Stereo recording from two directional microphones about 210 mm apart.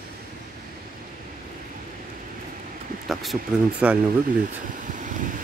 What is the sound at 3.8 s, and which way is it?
Speech, 5° right (ahead or behind).